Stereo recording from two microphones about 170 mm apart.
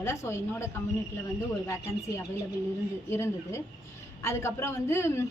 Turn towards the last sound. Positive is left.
turn(degrees=15)  # may be behind; listen again after turning